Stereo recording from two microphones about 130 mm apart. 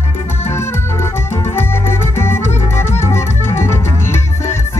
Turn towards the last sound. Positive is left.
turn(degrees=20)  # may be behind; listen again after turning